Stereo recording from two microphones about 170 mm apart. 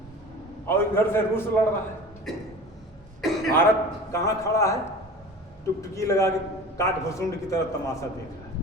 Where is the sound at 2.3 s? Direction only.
Centre (ahead or behind).